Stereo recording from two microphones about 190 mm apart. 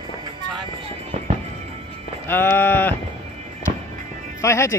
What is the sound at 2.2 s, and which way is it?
Speech, 10° left (ahead or behind).